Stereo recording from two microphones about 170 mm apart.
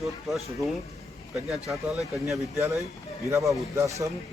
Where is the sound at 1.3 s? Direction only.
Centre (ahead or behind).